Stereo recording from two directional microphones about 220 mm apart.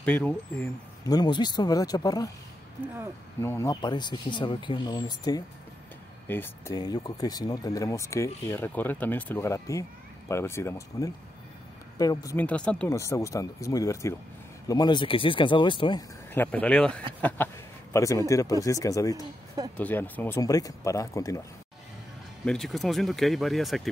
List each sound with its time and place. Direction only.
0.0 s speech: 5° left (ahead or behind)
1.1 s speech: 20° left (ahead or behind)
3.4 s speech: 15° left (ahead or behind)
16.3 s speech: 5° left (ahead or behind)
22.4 s speech: centre (ahead or behind)